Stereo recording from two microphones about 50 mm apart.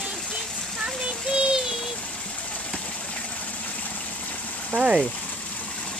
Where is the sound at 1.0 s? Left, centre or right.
Centre.